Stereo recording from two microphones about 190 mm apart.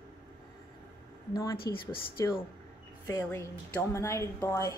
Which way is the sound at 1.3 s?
15° left (ahead or behind).